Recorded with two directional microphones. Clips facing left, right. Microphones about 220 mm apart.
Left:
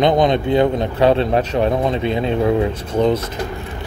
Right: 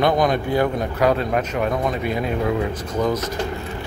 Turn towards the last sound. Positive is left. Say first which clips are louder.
# left 5 dB
turn(degrees=30)  # may be behind; listen again after turning